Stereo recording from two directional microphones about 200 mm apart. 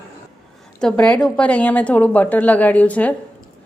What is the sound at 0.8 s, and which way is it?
A woman's voice, 5° left (ahead or behind).